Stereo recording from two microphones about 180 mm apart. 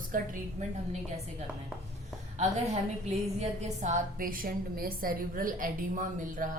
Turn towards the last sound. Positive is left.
turn(degrees=-50)  # may be behind; listen again after turning